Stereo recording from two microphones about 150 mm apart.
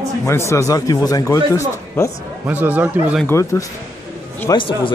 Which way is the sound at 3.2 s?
20° left (ahead or behind).